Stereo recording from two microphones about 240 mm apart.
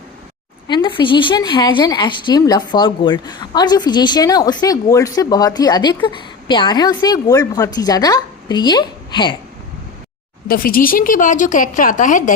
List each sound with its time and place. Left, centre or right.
0.7 s a woman's voice: left
10.5 s speech: left